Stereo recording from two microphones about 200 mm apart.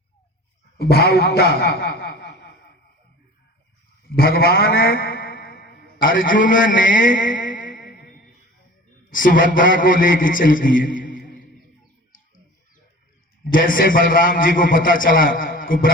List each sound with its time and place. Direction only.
0.8 s a man's voice: 50° left (ahead or behind)
4.1 s a sound: 50° left (ahead or behind)
9.0 s a man's voice: 40° left (ahead or behind)
13.5 s a man's voice: 45° left (ahead or behind)